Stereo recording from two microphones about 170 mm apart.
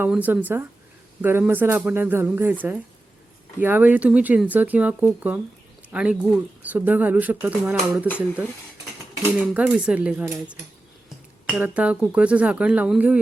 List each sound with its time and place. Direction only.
0.0 s speech: 10° right (ahead or behind)
9.6 s speech: 5° right (ahead or behind)